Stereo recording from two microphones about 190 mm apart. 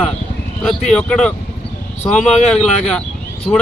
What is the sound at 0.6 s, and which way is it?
Speech, 5° left (ahead or behind).